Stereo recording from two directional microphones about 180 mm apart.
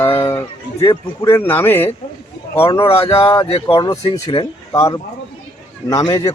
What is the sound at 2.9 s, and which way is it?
Speech, 30° left (ahead or behind).